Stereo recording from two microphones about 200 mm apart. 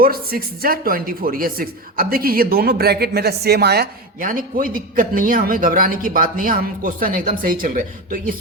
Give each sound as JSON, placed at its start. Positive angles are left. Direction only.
{"t": 0.0, "sound": "speech", "side_deg": -50}